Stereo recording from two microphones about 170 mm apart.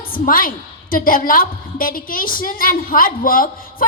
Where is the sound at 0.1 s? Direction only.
55° left (ahead or behind).